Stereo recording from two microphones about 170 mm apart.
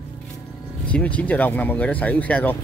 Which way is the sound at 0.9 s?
10° left (ahead or behind).